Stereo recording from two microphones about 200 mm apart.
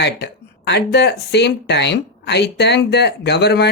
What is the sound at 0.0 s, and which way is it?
Speech, 60° left (ahead or behind).